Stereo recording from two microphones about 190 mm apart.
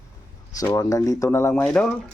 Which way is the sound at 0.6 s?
20° left (ahead or behind).